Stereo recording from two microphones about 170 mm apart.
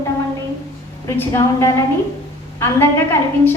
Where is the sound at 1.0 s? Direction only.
15° left (ahead or behind).